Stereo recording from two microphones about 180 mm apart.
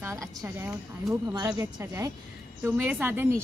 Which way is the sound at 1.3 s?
15° right (ahead or behind).